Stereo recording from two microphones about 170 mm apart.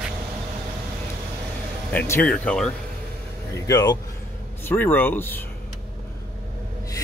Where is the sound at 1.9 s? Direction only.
10° left (ahead or behind).